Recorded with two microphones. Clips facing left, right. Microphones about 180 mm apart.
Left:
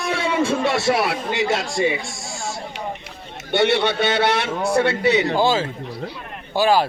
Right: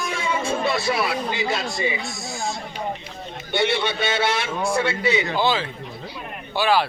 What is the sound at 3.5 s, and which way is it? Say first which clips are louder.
A man's voice: left 4 dB; 65° left (ahead or behind).